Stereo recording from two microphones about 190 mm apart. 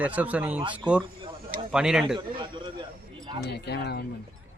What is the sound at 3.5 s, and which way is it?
Speech, 60° left (ahead or behind).